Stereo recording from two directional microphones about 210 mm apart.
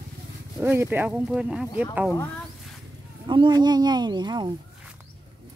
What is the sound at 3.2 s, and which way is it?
Speech, 20° right (ahead or behind).